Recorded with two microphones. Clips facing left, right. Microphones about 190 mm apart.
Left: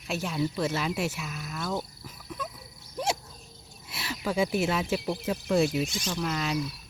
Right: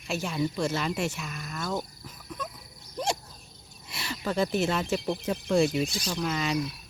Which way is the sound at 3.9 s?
5° left (ahead or behind).